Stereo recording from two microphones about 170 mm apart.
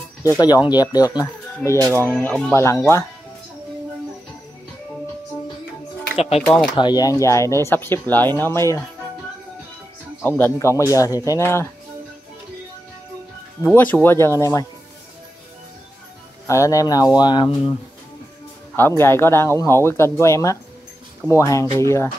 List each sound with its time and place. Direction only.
0.7 s speech: 25° left (ahead or behind)
6.1 s speech: 35° left (ahead or behind)
6.4 s speech: 5° left (ahead or behind)
6.8 s speech: 25° left (ahead or behind)
10.2 s speech: 10° left (ahead or behind)
13.6 s speech: 10° left (ahead or behind)
16.4 s speech: 20° left (ahead or behind)
18.8 s speech: 15° left (ahead or behind)